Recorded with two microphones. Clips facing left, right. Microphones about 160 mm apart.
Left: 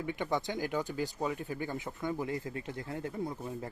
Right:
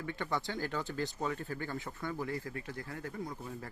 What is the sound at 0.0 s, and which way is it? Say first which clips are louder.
Speech: left 3 dB; 15° left (ahead or behind).